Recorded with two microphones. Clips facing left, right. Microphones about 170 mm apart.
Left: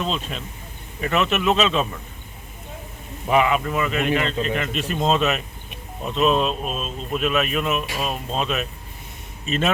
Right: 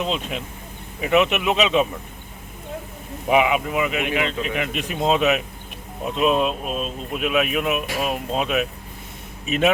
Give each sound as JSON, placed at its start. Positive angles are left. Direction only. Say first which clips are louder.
{"t": 0.0, "sound": "speech", "louder": "right 1 dB", "side_deg": -15}
{"t": 3.2, "sound": "speech", "louder": "right 1 dB", "side_deg": -10}